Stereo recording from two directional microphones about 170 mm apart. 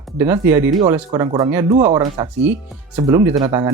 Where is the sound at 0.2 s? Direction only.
15° right (ahead or behind).